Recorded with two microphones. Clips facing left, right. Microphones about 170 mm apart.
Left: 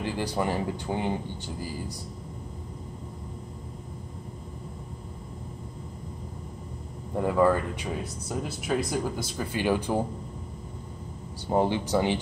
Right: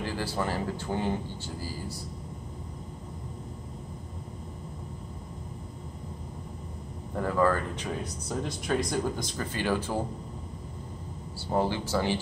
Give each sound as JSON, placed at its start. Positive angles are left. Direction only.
{"t": 0.0, "sound": "speech", "side_deg": 15}
{"t": 7.2, "sound": "speech", "side_deg": 15}
{"t": 11.4, "sound": "speech", "side_deg": 20}